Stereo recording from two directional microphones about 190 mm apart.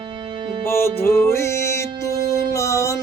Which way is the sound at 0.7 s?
15° left (ahead or behind).